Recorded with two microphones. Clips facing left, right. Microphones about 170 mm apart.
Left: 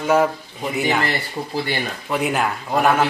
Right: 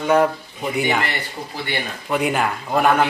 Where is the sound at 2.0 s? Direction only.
Centre (ahead or behind).